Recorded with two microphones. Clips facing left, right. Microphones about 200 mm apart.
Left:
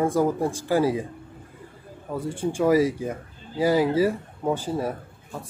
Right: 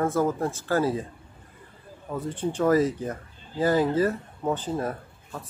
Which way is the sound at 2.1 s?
10° left (ahead or behind).